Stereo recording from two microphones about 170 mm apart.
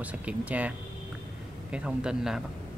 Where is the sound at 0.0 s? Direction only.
5° right (ahead or behind).